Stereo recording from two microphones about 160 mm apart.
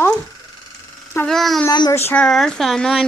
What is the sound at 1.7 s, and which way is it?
Speech, 25° left (ahead or behind).